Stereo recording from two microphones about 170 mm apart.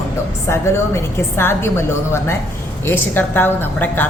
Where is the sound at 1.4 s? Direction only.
15° left (ahead or behind).